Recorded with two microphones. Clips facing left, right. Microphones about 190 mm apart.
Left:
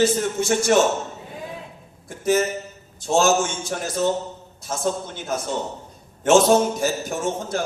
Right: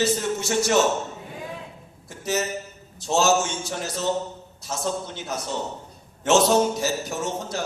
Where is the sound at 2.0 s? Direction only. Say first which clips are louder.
Left 6 dB; 50° left (ahead or behind).